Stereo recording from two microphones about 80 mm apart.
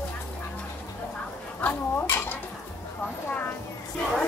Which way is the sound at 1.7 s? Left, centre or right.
Left.